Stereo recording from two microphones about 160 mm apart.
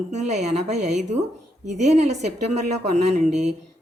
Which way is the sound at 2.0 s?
45° right (ahead or behind).